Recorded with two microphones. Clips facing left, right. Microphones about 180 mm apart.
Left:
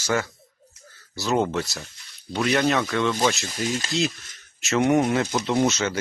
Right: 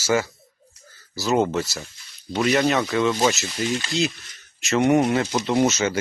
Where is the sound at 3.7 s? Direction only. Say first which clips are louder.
Right 1 dB; 40° left (ahead or behind).